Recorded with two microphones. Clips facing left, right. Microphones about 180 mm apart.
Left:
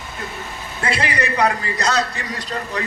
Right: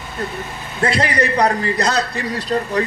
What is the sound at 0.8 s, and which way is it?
A man's voice, 40° right (ahead or behind).